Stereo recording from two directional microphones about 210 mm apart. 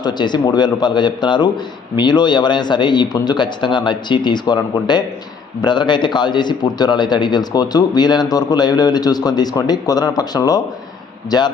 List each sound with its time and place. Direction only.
0.0 s a man's voice: 20° left (ahead or behind)